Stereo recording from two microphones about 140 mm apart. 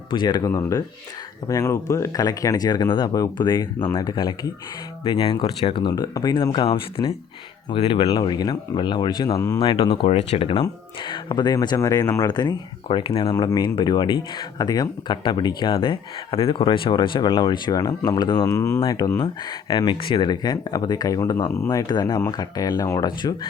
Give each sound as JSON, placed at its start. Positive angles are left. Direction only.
{"t": 0.1, "sound": "speech", "side_deg": 30}
{"t": 9.9, "sound": "speech", "side_deg": 50}